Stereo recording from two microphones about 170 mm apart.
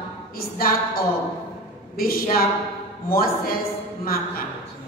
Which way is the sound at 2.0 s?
60° left (ahead or behind).